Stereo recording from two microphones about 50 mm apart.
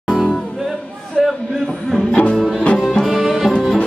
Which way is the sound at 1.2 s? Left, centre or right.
Centre.